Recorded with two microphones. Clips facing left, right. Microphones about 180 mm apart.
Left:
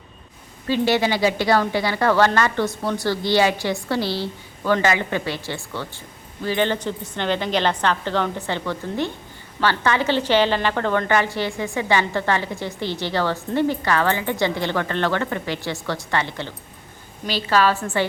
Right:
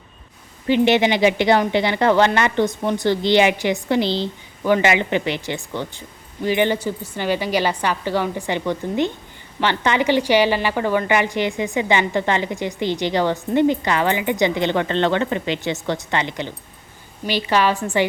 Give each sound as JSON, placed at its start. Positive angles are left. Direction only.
{"t": 0.7, "sound": "a woman's voice", "side_deg": -20}